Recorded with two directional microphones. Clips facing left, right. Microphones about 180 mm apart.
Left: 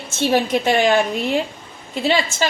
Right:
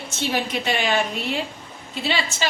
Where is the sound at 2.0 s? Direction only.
45° left (ahead or behind).